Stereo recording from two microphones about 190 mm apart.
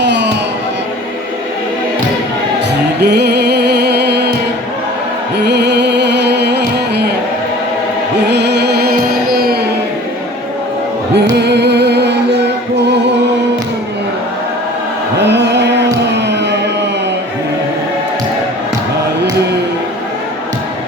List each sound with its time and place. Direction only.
0.0 s music: 65° right (ahead or behind)
3.0 s music: 60° right (ahead or behind)
5.5 s music: 65° right (ahead or behind)
8.3 s music: 65° right (ahead or behind)
11.1 s music: 60° right (ahead or behind)
15.3 s music: 65° right (ahead or behind)
16.2 s a sound: 65° right (ahead or behind)